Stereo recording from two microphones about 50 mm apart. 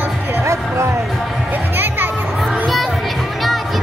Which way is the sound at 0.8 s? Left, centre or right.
Right.